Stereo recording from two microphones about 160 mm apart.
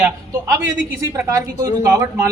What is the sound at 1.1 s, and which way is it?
A woman's voice, 20° right (ahead or behind).